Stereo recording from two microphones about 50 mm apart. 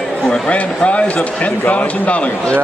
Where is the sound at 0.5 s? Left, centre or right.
Left.